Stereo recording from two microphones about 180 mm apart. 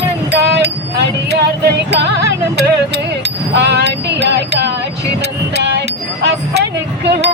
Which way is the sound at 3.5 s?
70° right (ahead or behind).